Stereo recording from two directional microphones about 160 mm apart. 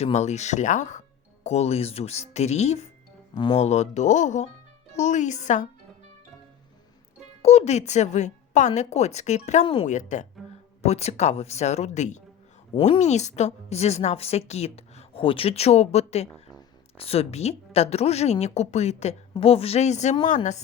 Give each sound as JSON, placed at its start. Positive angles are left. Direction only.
{"t": 0.0, "sound": "a woman's voice", "side_deg": 45}
{"t": 3.3, "sound": "a woman's voice", "side_deg": 30}
{"t": 3.6, "sound": "a woman's voice", "side_deg": 45}
{"t": 7.4, "sound": "a woman's voice", "side_deg": 45}